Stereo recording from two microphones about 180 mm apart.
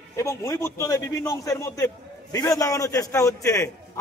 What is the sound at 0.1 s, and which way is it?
A man's voice, 15° left (ahead or behind).